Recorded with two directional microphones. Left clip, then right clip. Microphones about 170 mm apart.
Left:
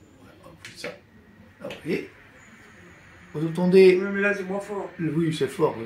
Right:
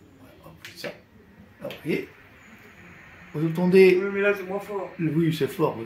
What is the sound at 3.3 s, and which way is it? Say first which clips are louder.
Speech: even; 15° right (ahead or behind).